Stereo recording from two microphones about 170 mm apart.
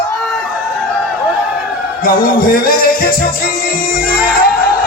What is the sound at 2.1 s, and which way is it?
Music, 55° left (ahead or behind).